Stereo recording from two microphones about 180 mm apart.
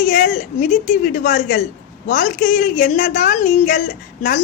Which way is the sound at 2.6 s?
60° left (ahead or behind).